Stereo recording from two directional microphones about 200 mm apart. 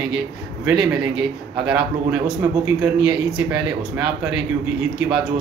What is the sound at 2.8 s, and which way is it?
A man's voice, 5° right (ahead or behind).